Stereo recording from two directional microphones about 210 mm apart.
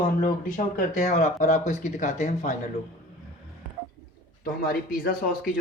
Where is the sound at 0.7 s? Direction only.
35° left (ahead or behind).